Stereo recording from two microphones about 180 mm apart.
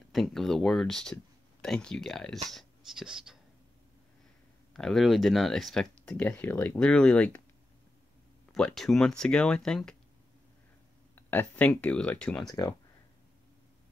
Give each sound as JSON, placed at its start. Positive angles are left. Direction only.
{"t": 0.1, "sound": "speech", "side_deg": 0}
{"t": 4.7, "sound": "speech", "side_deg": 0}
{"t": 8.5, "sound": "speech", "side_deg": 0}
{"t": 11.1, "sound": "speech", "side_deg": 10}
{"t": 12.4, "sound": "speech", "side_deg": 20}